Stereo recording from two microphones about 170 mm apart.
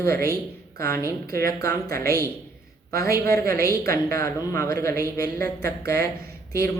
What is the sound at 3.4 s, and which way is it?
Speech, 60° right (ahead or behind).